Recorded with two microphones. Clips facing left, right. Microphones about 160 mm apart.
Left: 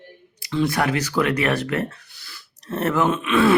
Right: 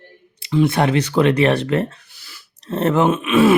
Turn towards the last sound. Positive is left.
turn(degrees=-20)  # may be behind; listen again after turning